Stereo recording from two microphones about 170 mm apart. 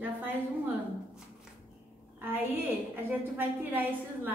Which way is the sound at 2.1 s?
10° right (ahead or behind).